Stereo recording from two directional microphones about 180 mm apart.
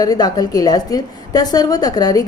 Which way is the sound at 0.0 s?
20° left (ahead or behind).